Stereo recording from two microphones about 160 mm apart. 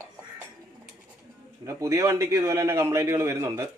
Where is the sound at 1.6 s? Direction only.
20° right (ahead or behind).